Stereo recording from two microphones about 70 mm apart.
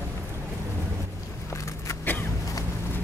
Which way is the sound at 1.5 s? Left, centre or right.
Left.